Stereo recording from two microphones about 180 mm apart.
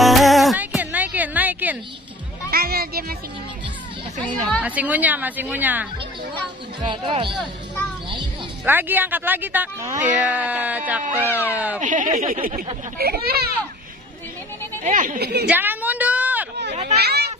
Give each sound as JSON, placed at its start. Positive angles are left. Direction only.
{"t": 0.0, "sound": "music", "side_deg": 0}
{"t": 2.5, "sound": "speech", "side_deg": -60}
{"t": 4.2, "sound": "speech", "side_deg": 10}
{"t": 4.6, "sound": "speech", "side_deg": -10}
{"t": 6.8, "sound": "speech", "side_deg": -25}
{"t": 8.6, "sound": "speech", "side_deg": -10}
{"t": 11.2, "sound": "speech", "side_deg": 10}
{"t": 11.5, "sound": "speech", "side_deg": -10}
{"t": 11.8, "sound": "speech", "side_deg": -45}
{"t": 14.8, "sound": "speech", "side_deg": -45}
{"t": 15.1, "sound": "speech", "side_deg": -65}
{"t": 15.4, "sound": "a woman's voice", "side_deg": -10}
{"t": 17.0, "sound": "speech", "side_deg": -65}